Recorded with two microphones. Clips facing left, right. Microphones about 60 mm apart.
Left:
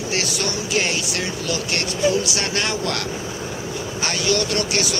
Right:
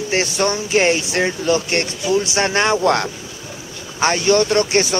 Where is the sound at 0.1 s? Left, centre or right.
Right.